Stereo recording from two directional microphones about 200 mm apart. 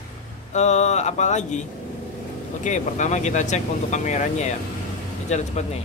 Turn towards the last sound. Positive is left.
turn(degrees=35)  # may be behind; listen again after turning